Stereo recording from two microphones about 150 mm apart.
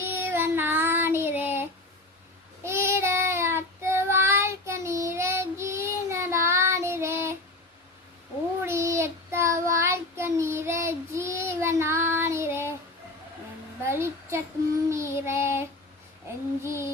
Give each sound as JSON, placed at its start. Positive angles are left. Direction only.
{"t": 0.0, "sound": "child singing", "side_deg": -15}
{"t": 2.6, "sound": "child singing", "side_deg": -15}
{"t": 8.6, "sound": "child singing", "side_deg": -20}
{"t": 13.8, "sound": "a sound", "side_deg": -15}
{"t": 14.8, "sound": "child singing", "side_deg": -20}
{"t": 16.6, "sound": "child singing", "side_deg": -15}